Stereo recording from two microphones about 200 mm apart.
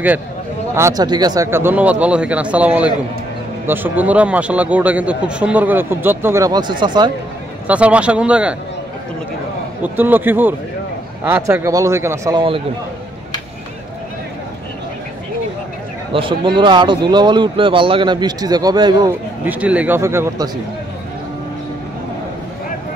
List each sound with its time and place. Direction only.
0.7 s a man's voice: 15° right (ahead or behind)
7.6 s speech: 5° right (ahead or behind)
9.9 s a man's voice: 10° right (ahead or behind)
16.1 s speech: 25° right (ahead or behind)
19.4 s a man's voice: 5° right (ahead or behind)